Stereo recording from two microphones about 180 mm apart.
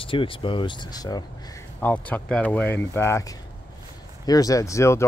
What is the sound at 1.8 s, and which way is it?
Speech, 10° left (ahead or behind).